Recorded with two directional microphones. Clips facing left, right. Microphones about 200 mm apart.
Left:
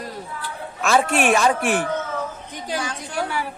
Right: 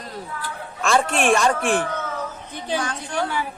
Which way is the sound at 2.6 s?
10° left (ahead or behind).